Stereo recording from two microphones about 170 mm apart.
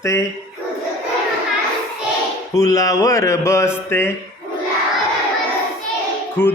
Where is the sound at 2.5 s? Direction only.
20° left (ahead or behind).